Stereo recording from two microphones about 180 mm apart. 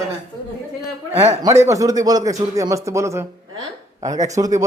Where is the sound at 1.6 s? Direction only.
20° right (ahead or behind).